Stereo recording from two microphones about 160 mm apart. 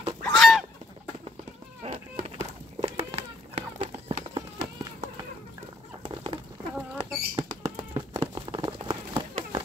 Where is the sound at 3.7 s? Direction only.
35° right (ahead or behind).